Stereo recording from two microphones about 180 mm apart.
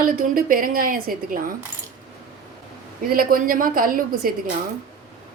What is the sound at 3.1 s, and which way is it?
A woman's voice, 50° right (ahead or behind).